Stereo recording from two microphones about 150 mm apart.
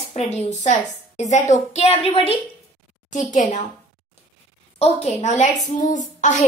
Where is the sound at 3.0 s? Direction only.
55° left (ahead or behind).